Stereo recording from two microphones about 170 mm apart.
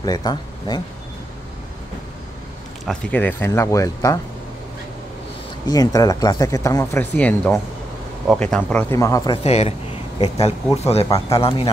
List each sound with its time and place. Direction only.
0.0 s speech: 25° left (ahead or behind)
2.8 s speech: 5° left (ahead or behind)
5.7 s speech: 20° left (ahead or behind); by 8.8 s 5° left (ahead or behind)
8.9 s speech: 20° left (ahead or behind)
9.4 s speech: 35° left (ahead or behind)